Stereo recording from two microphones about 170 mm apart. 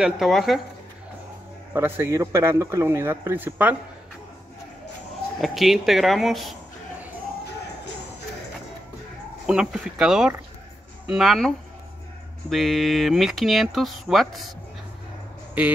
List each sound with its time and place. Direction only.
0.0 s speech: centre (ahead or behind)
1.7 s a man's voice: 15° right (ahead or behind)
5.4 s speech: centre (ahead or behind)
9.5 s speech: 5° right (ahead or behind)